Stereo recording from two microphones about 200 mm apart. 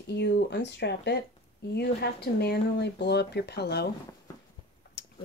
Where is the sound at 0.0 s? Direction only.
55° left (ahead or behind).